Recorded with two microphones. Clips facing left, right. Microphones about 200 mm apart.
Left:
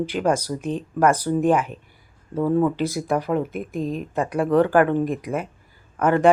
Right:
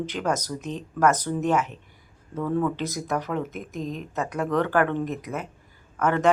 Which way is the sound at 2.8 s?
10° left (ahead or behind).